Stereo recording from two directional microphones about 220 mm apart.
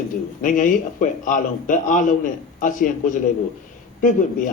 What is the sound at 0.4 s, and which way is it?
A man's voice, 35° left (ahead or behind).